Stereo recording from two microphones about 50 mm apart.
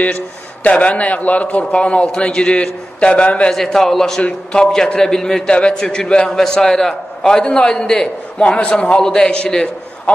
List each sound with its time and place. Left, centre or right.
0.7 s a man's voice: left
3.5 s a man's voice: centre
4.2 s a man's voice: left